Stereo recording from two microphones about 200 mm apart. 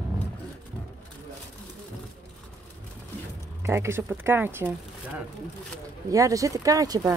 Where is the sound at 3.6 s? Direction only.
15° right (ahead or behind).